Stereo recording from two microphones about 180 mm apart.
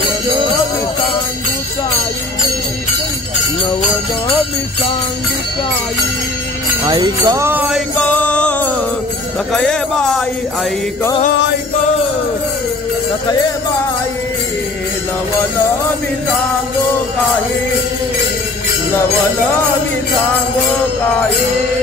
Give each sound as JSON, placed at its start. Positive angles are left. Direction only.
{"t": 6.8, "sound": "jingle bell", "side_deg": -25}
{"t": 8.0, "sound": "music", "side_deg": 10}